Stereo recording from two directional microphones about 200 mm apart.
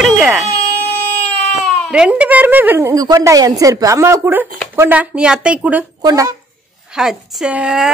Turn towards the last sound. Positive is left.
turn(degrees=-5)  # may be behind; listen again after turning